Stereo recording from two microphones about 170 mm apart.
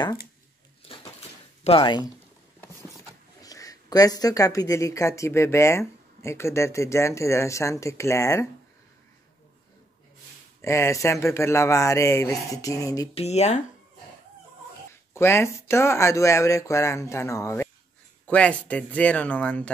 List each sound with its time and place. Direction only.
1.6 s speech: 30° left (ahead or behind)
3.4 s speech: 20° left (ahead or behind)
10.6 s speech: 15° left (ahead or behind)
13.1 s speech: 40° left (ahead or behind)
15.1 s speech: 15° left (ahead or behind)
18.2 s speech: 5° left (ahead or behind)